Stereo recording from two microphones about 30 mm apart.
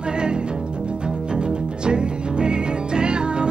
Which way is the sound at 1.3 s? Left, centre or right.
Right.